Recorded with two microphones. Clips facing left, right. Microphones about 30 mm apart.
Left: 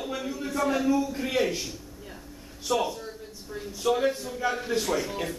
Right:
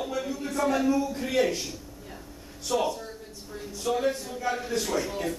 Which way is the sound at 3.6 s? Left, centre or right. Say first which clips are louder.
Left 2 dB; centre.